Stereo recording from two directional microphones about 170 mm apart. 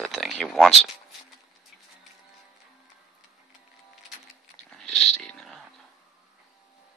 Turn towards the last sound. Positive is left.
turn(degrees=5)  # may be behind; listen again after turning